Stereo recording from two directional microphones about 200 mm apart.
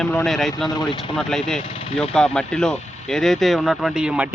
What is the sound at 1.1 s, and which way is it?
Speech, centre (ahead or behind).